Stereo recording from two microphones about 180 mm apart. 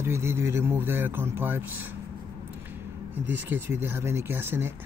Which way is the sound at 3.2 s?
10° right (ahead or behind).